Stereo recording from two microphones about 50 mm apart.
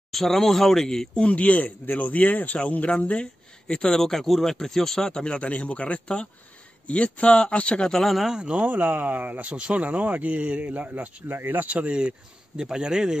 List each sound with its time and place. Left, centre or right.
0.1 s speech: centre
1.2 s speech: left
3.6 s speech: centre
8.0 s speech: centre
8.3 s speech: right
11.2 s speech: right
11.6 s speech: right